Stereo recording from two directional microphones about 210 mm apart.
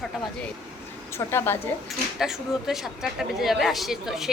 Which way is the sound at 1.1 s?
10° left (ahead or behind).